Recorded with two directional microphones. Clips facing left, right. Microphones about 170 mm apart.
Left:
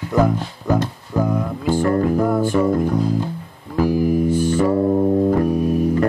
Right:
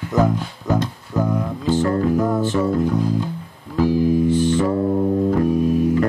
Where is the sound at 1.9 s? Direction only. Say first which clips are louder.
Left 3 dB; 35° left (ahead or behind).